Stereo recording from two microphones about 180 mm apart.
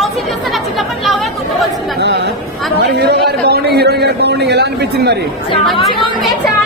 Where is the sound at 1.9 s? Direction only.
75° right (ahead or behind).